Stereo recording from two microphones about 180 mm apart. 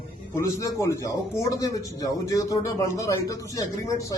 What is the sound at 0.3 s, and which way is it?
A man's voice, 15° left (ahead or behind).